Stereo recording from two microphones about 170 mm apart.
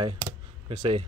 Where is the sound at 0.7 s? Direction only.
35° right (ahead or behind).